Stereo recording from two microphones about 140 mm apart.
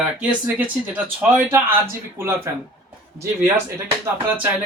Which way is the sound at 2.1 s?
20° right (ahead or behind).